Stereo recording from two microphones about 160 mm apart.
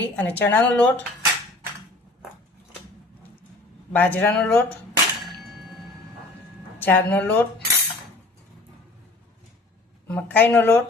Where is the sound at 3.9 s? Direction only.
10° left (ahead or behind).